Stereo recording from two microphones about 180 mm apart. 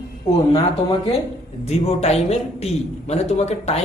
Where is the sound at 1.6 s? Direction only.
35° left (ahead or behind).